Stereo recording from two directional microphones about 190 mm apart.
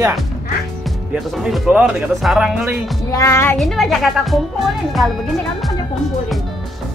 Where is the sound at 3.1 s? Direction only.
15° left (ahead or behind).